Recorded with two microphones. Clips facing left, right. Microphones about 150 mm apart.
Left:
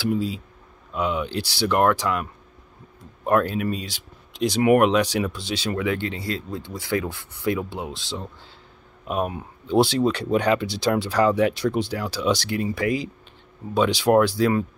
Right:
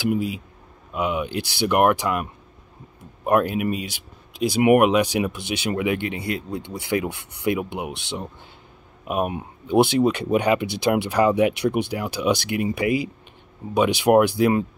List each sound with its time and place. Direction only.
0.0 s speech: 15° right (ahead or behind)
3.3 s speech: 15° right (ahead or behind)
9.0 s speech: 10° right (ahead or behind)